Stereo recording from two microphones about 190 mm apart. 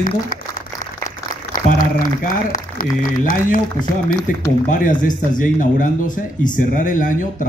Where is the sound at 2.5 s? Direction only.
45° left (ahead or behind).